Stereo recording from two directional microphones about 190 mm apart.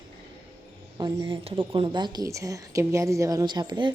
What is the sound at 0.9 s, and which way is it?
A woman's voice, 20° right (ahead or behind).